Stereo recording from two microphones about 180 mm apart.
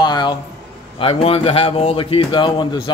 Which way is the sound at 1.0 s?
30° left (ahead or behind).